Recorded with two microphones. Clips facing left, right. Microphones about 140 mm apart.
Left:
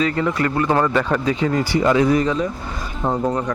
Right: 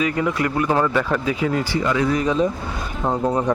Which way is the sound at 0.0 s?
10° right (ahead or behind).